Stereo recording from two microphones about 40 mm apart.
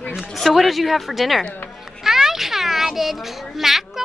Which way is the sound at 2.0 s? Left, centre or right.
Centre.